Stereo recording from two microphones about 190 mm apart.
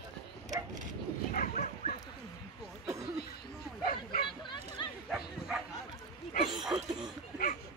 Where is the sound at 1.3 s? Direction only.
45° left (ahead or behind).